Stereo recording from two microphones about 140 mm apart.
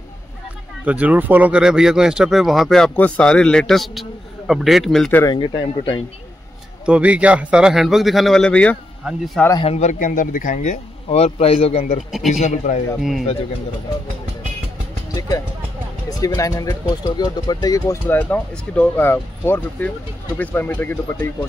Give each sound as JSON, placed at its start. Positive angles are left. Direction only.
{"t": 0.8, "sound": "speech", "side_deg": -10}
{"t": 5.2, "sound": "speech", "side_deg": 35}
{"t": 6.9, "sound": "speech", "side_deg": -10}
{"t": 9.8, "sound": "speech", "side_deg": 60}
{"t": 12.3, "sound": "speech", "side_deg": 55}
{"t": 15.1, "sound": "speech", "side_deg": 25}